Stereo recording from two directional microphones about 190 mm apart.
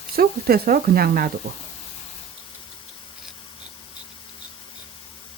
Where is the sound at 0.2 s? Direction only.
55° right (ahead or behind).